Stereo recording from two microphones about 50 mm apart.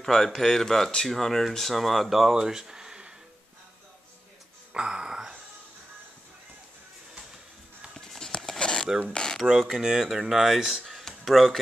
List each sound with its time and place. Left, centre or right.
0.0 s speech: centre
4.7 s a sound: centre
7.9 s music: centre
9.1 s dishes: centre
9.4 s speech: centre